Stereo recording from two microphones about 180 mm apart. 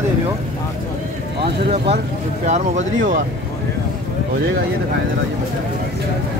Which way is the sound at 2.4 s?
40° right (ahead or behind).